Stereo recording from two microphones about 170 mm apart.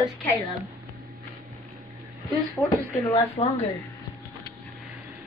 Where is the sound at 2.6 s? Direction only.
Centre (ahead or behind).